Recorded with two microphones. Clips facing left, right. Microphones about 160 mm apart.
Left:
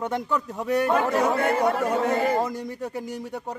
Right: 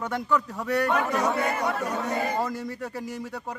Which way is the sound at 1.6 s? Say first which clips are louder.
Left 6 dB; 55° left (ahead or behind).